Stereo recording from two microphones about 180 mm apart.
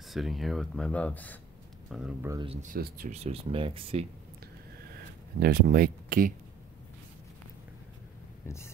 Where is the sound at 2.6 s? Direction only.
50° right (ahead or behind).